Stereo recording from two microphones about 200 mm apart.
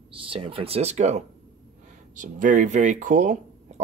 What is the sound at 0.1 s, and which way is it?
Speech, 25° right (ahead or behind).